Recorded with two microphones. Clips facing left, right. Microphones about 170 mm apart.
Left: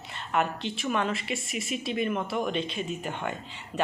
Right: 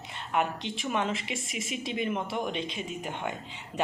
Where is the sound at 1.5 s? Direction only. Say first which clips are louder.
Left 2 dB; 90° right.